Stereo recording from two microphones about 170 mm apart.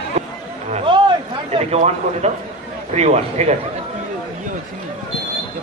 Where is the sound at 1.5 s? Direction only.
40° right (ahead or behind).